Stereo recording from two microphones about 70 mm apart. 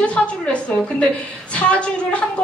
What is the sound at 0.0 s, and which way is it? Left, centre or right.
A woman's voice, centre.